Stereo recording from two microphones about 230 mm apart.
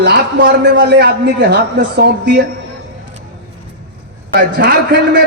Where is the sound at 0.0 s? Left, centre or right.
Right.